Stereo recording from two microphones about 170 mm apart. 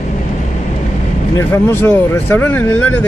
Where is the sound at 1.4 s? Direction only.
15° left (ahead or behind).